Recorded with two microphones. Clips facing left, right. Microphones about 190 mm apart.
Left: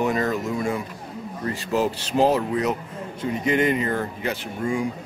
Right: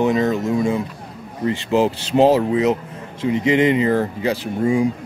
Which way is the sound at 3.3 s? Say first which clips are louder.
Right 5 dB; 90° right.